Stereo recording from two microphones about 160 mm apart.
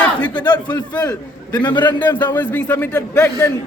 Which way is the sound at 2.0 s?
10° left (ahead or behind).